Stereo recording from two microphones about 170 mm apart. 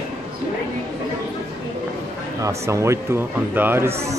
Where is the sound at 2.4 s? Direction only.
15° right (ahead or behind).